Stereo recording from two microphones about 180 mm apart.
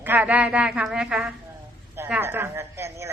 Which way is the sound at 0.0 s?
10° right (ahead or behind).